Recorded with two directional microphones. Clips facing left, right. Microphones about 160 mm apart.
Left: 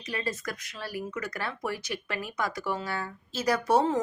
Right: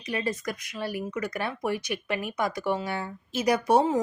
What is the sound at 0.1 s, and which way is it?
Speech, 20° right (ahead or behind).